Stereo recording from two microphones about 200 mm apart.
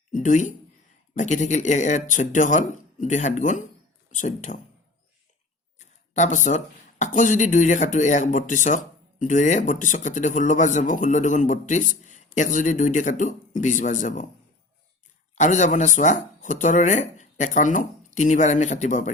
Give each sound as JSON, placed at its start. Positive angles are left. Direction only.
{"t": 0.1, "sound": "speech", "side_deg": 40}
{"t": 5.8, "sound": "a sound", "side_deg": 35}
{"t": 7.0, "sound": "speech", "side_deg": 40}
{"t": 15.4, "sound": "speech", "side_deg": 35}